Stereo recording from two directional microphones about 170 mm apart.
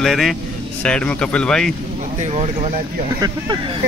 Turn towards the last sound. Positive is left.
turn(degrees=-25)  # may be behind; listen again after turning